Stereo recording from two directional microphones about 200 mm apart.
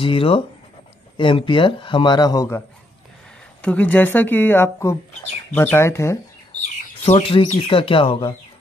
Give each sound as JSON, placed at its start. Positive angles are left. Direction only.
{"t": 0.0, "sound": "a man's voice", "side_deg": 25}
{"t": 3.6, "sound": "speech", "side_deg": 5}
{"t": 6.6, "sound": "speech", "side_deg": 35}